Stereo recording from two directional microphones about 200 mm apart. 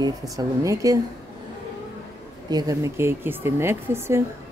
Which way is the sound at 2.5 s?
20° right (ahead or behind).